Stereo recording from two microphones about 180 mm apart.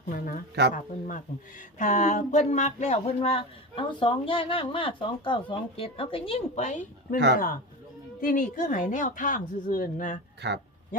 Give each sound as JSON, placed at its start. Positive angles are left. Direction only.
{"t": 0.1, "sound": "speech", "side_deg": 50}
{"t": 8.2, "sound": "speech", "side_deg": 45}
{"t": 10.4, "sound": "speech", "side_deg": -70}